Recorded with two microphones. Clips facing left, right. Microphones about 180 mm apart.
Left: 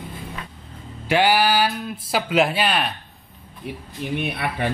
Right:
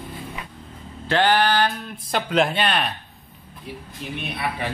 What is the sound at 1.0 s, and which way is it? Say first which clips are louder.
Speech: left 1 dB; 10° left (ahead or behind).